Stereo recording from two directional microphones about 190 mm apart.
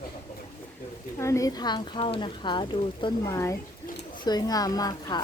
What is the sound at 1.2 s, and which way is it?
Speech, 15° left (ahead or behind).